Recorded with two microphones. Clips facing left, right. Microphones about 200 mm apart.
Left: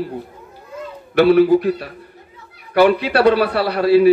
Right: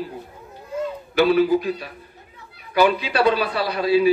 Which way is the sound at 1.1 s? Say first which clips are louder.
Left 5 dB; 65° left (ahead or behind).